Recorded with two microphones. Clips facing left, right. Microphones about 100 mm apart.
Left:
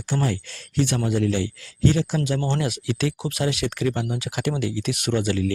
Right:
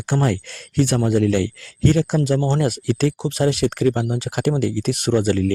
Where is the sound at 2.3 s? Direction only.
35° right (ahead or behind).